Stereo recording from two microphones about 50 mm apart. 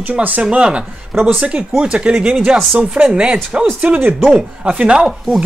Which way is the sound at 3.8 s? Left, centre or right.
Right.